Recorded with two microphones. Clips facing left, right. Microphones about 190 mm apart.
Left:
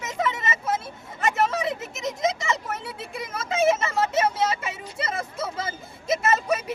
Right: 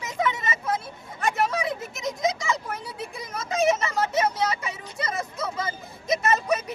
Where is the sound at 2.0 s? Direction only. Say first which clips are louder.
Left 1 dB; centre (ahead or behind).